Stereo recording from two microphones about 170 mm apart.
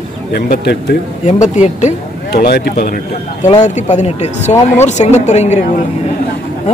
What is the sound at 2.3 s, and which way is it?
Speech, 70° left (ahead or behind).